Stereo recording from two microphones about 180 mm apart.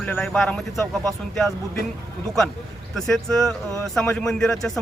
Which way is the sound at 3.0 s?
Centre (ahead or behind).